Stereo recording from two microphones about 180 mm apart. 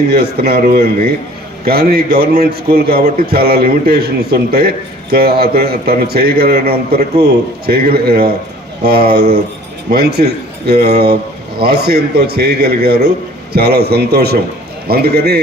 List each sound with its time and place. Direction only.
0.1 s a man's voice: 60° right (ahead or behind)